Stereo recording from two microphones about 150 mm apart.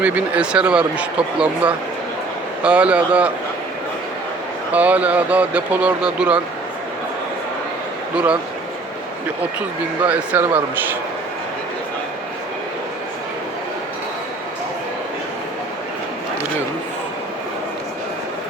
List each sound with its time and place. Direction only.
0.0 s speech: 10° right (ahead or behind)
4.7 s speech: 10° right (ahead or behind)
8.1 s speech: 10° right (ahead or behind)
10.0 s speech: 10° right (ahead or behind)